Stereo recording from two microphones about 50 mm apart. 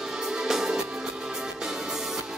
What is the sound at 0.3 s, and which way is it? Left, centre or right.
Music, centre.